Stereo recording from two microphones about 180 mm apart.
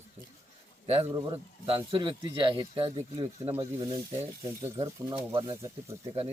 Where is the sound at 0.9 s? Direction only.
30° right (ahead or behind).